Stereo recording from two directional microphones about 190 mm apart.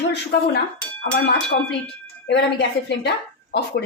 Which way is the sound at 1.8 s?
65° left (ahead or behind).